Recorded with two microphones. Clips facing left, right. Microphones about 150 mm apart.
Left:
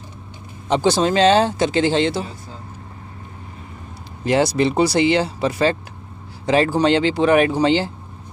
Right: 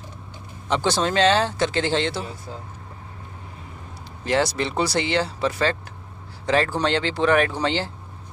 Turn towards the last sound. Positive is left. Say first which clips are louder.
# left 6 dB
turn(degrees=15)  # may be behind; listen again after turning